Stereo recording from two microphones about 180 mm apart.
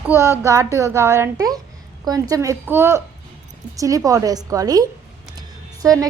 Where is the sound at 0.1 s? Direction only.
15° right (ahead or behind).